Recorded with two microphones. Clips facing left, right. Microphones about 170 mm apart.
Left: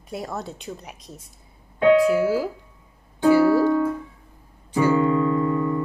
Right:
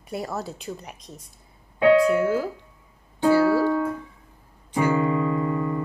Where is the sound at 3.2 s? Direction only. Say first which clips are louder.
Left 2 dB; 15° left (ahead or behind).